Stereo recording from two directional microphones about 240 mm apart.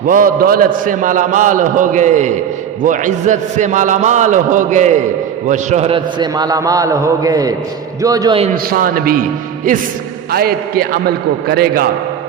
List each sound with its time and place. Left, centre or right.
0.0 s a man's voice: right; by 8.4 s centre
8.5 s a man's voice: right
10.3 s a man's voice: right